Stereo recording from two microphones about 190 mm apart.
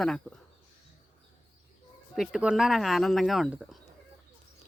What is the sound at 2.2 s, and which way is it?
Speech, 5° right (ahead or behind).